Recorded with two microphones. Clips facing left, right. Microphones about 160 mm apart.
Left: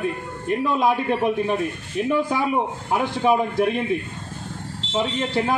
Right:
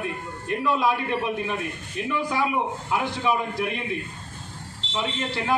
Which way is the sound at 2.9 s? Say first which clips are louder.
Left 6 dB; 50° left (ahead or behind).